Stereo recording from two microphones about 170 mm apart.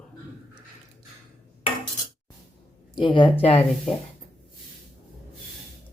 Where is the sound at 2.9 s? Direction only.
30° left (ahead or behind).